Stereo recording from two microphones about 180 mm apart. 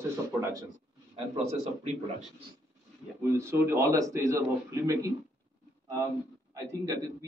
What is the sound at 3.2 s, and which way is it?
A man's voice, 15° right (ahead or behind).